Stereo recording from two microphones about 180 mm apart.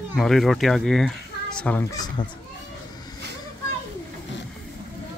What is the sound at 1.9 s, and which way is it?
Speech, 20° left (ahead or behind).